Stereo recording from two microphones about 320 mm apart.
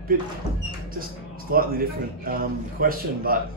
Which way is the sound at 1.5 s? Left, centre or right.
Right.